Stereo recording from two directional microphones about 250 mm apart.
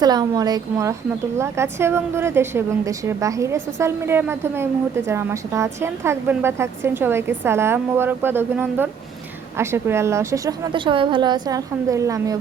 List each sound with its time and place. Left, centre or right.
0.0 s a woman's voice: centre